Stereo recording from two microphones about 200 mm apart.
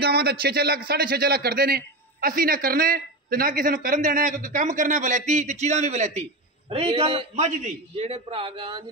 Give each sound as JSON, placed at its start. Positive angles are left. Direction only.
{"t": 0.0, "sound": "a man's voice", "side_deg": -55}